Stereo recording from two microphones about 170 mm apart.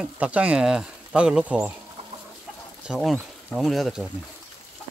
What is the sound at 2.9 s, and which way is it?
Speech, 5° right (ahead or behind).